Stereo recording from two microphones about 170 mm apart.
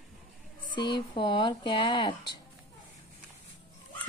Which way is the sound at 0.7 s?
30° left (ahead or behind).